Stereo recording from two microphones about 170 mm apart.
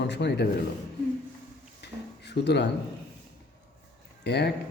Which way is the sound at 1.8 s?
85° left.